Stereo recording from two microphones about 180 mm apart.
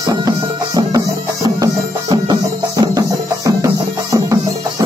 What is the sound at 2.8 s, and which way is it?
Music, 20° right (ahead or behind).